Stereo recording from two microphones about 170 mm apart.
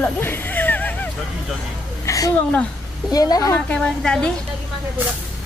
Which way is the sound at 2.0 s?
20° left (ahead or behind).